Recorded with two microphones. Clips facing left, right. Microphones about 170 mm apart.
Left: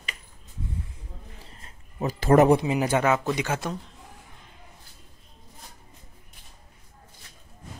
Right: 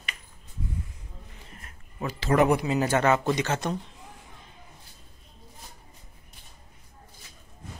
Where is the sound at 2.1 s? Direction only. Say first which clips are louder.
Left 5 dB; 45° left (ahead or behind).